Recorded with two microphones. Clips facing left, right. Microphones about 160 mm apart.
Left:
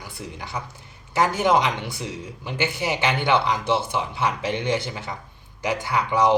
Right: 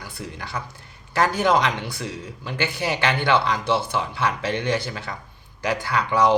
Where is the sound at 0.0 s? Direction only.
20° left (ahead or behind).